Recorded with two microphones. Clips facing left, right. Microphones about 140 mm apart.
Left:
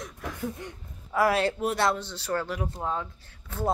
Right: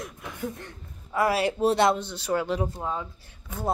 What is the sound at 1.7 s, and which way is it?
Speech, 20° right (ahead or behind).